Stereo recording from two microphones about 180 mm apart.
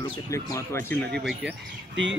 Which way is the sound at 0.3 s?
15° left (ahead or behind).